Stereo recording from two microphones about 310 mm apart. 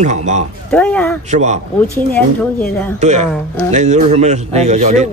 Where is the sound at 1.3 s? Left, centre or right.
Right.